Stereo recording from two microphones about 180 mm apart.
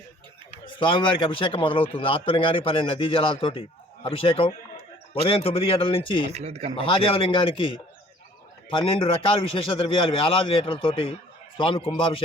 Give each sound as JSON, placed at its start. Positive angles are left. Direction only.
{"t": 0.6, "sound": "a man's voice", "side_deg": 25}
{"t": 6.3, "sound": "speech", "side_deg": -35}
{"t": 6.7, "sound": "a man's voice", "side_deg": 30}